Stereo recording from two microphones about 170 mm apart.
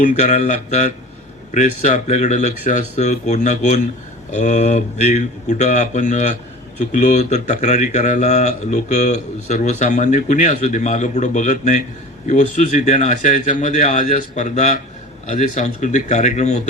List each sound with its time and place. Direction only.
0.0 s a man's voice: 45° left (ahead or behind)